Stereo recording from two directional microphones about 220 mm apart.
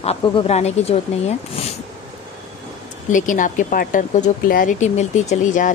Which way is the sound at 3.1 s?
35° left (ahead or behind).